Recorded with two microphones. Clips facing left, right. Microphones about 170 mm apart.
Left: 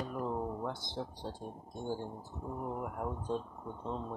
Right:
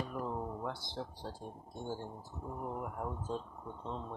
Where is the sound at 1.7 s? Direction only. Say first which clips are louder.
Left 3 dB; 15° left (ahead or behind).